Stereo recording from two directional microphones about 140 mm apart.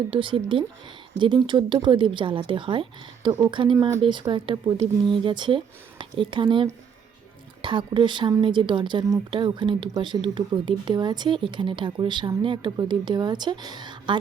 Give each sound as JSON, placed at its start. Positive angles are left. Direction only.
{"t": 0.1, "sound": "speech", "side_deg": -35}